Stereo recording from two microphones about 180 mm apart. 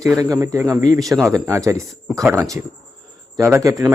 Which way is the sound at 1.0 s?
Centre (ahead or behind).